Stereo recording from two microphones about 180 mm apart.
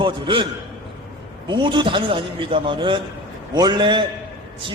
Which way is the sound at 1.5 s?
25° right (ahead or behind).